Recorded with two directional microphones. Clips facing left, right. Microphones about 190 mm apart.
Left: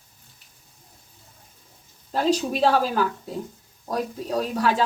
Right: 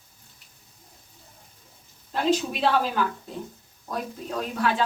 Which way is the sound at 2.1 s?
40° left (ahead or behind).